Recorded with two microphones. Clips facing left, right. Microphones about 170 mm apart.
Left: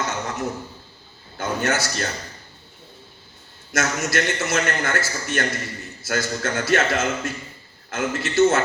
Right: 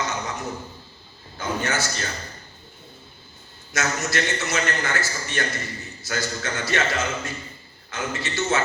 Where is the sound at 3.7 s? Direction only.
50° left (ahead or behind).